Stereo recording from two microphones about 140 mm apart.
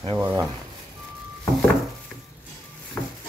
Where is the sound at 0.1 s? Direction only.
15° right (ahead or behind).